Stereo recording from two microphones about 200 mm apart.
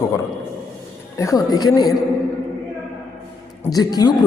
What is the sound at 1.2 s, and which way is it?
Speech, 15° left (ahead or behind).